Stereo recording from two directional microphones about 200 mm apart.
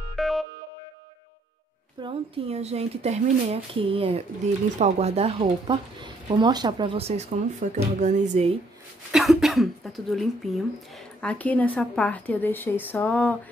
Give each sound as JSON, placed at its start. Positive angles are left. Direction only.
{"t": 0.1, "sound": "music", "side_deg": 0}
{"t": 2.0, "sound": "speech", "side_deg": -25}
{"t": 9.1, "sound": "speech", "side_deg": 0}